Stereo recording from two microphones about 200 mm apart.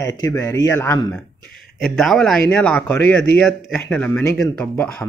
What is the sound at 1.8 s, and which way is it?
Speech, centre (ahead or behind).